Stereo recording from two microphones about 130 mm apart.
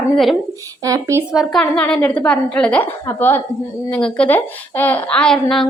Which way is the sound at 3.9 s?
10° left (ahead or behind).